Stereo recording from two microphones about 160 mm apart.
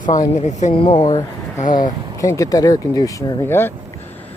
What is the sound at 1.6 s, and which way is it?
Speech, 55° left (ahead or behind).